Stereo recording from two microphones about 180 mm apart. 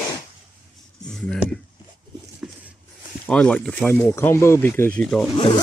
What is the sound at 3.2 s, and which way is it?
Speech, 5° left (ahead or behind).